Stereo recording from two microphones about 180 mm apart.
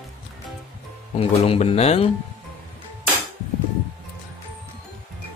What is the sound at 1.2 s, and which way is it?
Speech, 35° left (ahead or behind).